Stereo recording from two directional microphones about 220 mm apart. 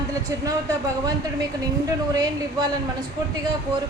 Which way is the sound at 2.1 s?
15° right (ahead or behind).